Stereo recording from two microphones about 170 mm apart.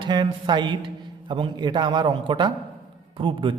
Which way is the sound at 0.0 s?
25° right (ahead or behind).